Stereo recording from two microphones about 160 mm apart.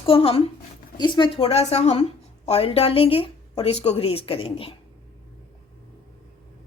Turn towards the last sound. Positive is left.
turn(degrees=35)  # may be behind; listen again after turning